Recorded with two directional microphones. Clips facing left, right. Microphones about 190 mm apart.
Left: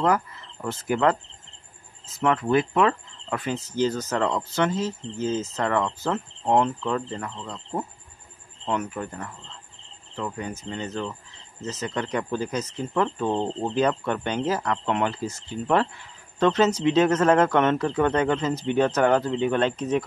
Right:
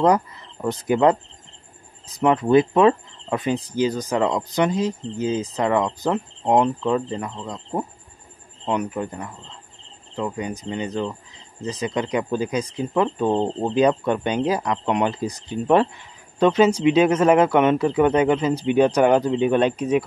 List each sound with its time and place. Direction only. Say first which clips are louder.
0.0 s speech: right 5 dB; 20° right (ahead or behind)
2.1 s speech: right 5 dB; 20° right (ahead or behind)